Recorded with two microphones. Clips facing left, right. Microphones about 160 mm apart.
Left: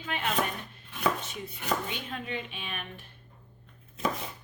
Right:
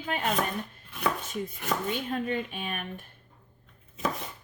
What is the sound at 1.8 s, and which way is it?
A woman's voice, 45° right (ahead or behind).